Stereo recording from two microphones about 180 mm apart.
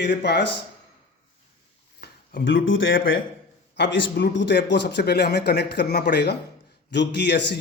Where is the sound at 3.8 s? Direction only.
75° left (ahead or behind).